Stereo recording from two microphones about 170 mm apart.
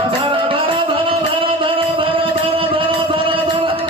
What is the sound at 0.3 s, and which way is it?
Music, 30° right (ahead or behind).